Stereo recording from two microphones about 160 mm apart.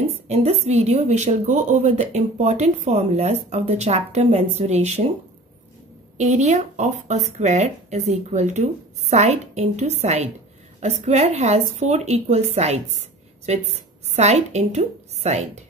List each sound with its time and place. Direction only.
0.3 s speech: 40° right (ahead or behind)
6.1 s speech: 50° right (ahead or behind)